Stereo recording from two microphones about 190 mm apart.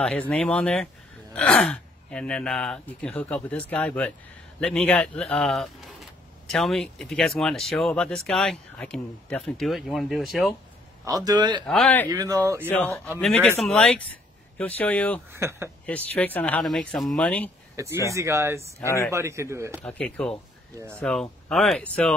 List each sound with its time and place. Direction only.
0.0 s speech: 5° left (ahead or behind)
11.1 s speech: 20° right (ahead or behind)
11.6 s speech: 5° left (ahead or behind)
12.1 s speech: 20° right (ahead or behind)
12.6 s speech: 10° left (ahead or behind)
15.3 s a man's voice: 15° right (ahead or behind)
15.8 s speech: 5° left (ahead or behind)
17.7 s a man's voice: 15° right (ahead or behind)
18.8 s speech: 15° left (ahead or behind)
19.1 s a man's voice: 15° right (ahead or behind)
19.8 s speech: 5° left (ahead or behind)